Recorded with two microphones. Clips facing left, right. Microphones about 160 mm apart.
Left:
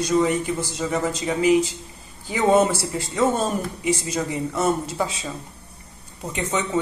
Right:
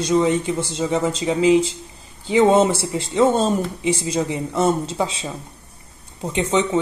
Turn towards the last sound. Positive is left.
turn(degrees=-25)  # may be behind; listen again after turning